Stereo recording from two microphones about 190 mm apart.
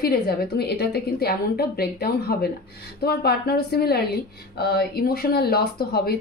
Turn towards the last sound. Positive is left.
turn(degrees=55)  # may be behind; listen again after turning